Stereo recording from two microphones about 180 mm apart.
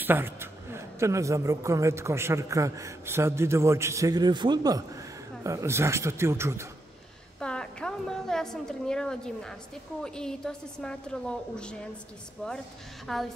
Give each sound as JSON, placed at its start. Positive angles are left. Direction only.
{"t": 0.0, "sound": "a man's voice", "side_deg": -10}
{"t": 7.3, "sound": "a sound", "side_deg": 5}
{"t": 10.0, "sound": "a woman's voice", "side_deg": 5}